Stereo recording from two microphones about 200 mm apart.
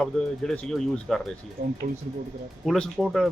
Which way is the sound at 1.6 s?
45° right (ahead or behind).